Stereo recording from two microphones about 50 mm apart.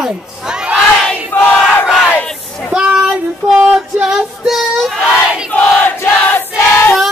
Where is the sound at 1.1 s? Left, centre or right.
Left.